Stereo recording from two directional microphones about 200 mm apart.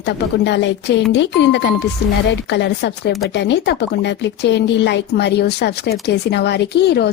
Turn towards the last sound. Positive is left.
turn(degrees=55)  # may be behind; listen again after turning